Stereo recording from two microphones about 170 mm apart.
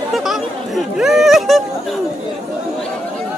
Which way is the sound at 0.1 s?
Centre (ahead or behind).